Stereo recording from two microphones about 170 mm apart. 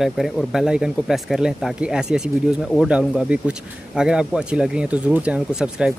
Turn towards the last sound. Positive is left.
turn(degrees=-5)  # may be behind; listen again after turning